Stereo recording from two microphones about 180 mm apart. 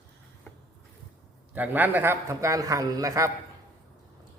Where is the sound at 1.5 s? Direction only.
10° right (ahead or behind).